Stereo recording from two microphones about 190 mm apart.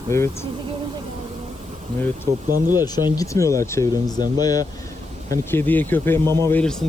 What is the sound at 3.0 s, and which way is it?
Speech, 20° left (ahead or behind).